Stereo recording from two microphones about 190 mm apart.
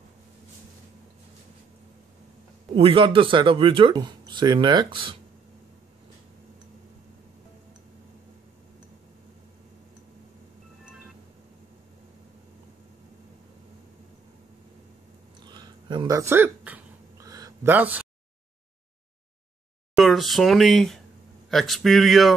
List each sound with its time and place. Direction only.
2.7 s speech: 30° right (ahead or behind)
15.4 s a sound: 20° right (ahead or behind)
20.0 s speech: centre (ahead or behind)